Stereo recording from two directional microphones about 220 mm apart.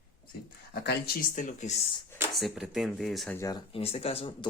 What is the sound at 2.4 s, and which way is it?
Speech, centre (ahead or behind).